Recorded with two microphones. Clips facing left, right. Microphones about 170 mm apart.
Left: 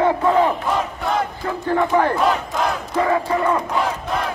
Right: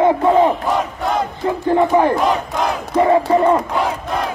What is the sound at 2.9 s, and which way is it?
Battle cry, 25° right (ahead or behind).